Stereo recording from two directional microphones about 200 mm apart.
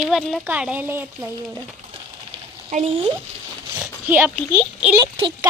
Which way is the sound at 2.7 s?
35° right (ahead or behind).